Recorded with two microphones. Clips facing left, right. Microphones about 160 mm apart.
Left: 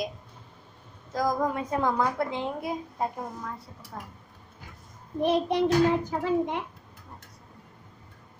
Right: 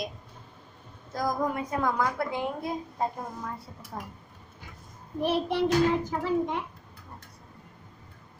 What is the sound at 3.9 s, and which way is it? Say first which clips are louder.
Speech: right 2 dB; 10° right (ahead or behind).